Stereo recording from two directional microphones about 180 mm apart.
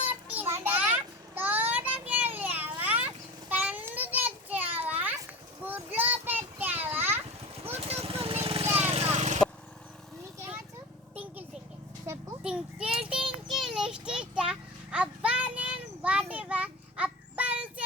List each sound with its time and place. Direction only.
0.0 s child singing: 10° right (ahead or behind)
3.5 s a sound: 10° right (ahead or behind)
7.9 s vehicle: 35° right (ahead or behind)
11.1 s vehicle: 10° right (ahead or behind)
12.4 s child singing: 5° right (ahead or behind)